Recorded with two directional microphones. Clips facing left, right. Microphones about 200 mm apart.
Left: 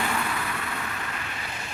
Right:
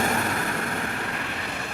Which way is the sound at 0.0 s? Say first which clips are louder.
Right 4 dB; 45° right (ahead or behind).